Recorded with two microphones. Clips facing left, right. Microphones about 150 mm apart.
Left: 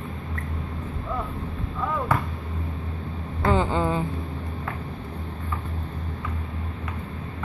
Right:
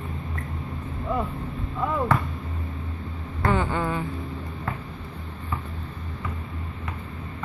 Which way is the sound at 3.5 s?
20° left (ahead or behind).